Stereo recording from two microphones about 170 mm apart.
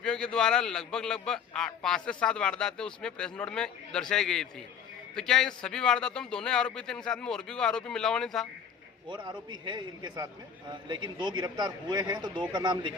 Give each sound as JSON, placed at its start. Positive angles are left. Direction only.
{"t": 0.0, "sound": "a man's voice", "side_deg": 5}
{"t": 9.0, "sound": "a man's voice", "side_deg": -25}